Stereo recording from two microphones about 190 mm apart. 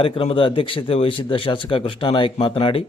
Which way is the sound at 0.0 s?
30° left (ahead or behind).